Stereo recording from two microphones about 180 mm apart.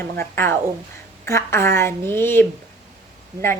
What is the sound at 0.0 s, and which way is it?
A woman's voice, 15° left (ahead or behind).